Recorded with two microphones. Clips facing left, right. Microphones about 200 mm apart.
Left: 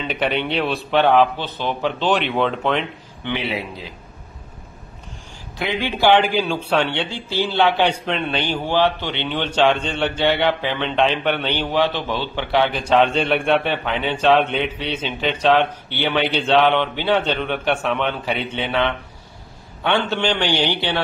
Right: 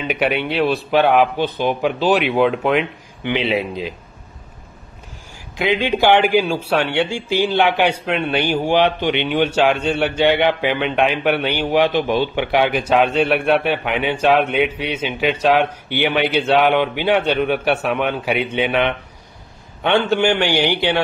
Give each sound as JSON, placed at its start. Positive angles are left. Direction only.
{"t": 0.1, "sound": "a man's voice", "side_deg": -10}
{"t": 5.6, "sound": "speech", "side_deg": -15}